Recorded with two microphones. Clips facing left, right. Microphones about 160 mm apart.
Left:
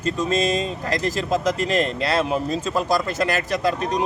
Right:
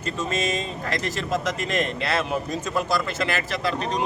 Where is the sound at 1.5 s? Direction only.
35° left (ahead or behind).